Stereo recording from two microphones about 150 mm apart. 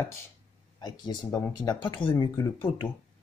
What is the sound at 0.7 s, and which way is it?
Speech, 30° left (ahead or behind).